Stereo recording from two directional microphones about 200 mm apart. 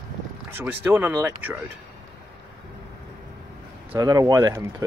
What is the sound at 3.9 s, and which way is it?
Speech, 15° right (ahead or behind).